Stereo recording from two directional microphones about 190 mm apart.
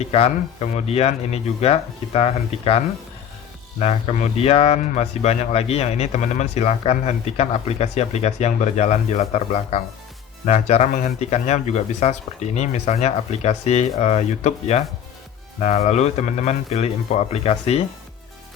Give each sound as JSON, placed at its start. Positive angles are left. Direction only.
{"t": 0.0, "sound": "speech", "side_deg": 35}